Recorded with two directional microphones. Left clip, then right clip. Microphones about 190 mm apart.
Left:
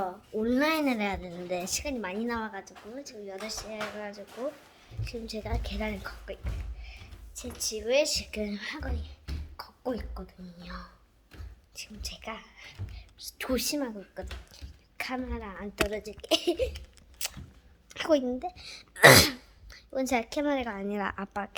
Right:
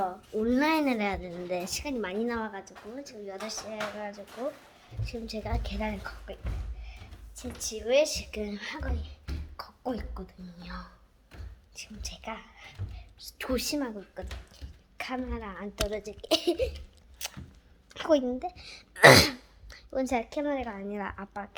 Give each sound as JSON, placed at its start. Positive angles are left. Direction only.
{"t": 0.0, "sound": "a woman's voice", "side_deg": 5}
{"t": 14.5, "sound": "a sound", "side_deg": 10}
{"t": 15.3, "sound": "a woman's voice", "side_deg": 0}
{"t": 16.2, "sound": "speech", "side_deg": -10}
{"t": 17.2, "sound": "a sound", "side_deg": 10}
{"t": 17.8, "sound": "a woman's voice", "side_deg": 5}
{"t": 18.2, "sound": "a woman's voice", "side_deg": -5}
{"t": 19.7, "sound": "a sound", "side_deg": -10}
{"t": 20.1, "sound": "a woman's voice", "side_deg": 10}